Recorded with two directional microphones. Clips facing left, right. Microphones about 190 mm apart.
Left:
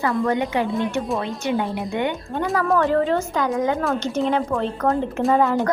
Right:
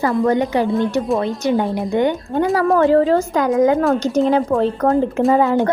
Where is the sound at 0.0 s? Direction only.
35° right (ahead or behind).